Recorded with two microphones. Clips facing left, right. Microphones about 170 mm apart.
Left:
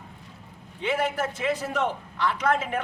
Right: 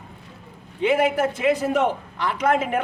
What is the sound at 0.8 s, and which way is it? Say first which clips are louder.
A man's voice: right 7 dB; 15° right (ahead or behind).